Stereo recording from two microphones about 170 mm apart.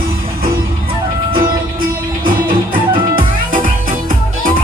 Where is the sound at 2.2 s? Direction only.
55° right (ahead or behind).